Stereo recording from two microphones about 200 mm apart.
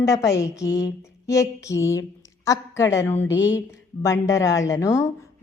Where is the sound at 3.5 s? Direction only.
15° left (ahead or behind).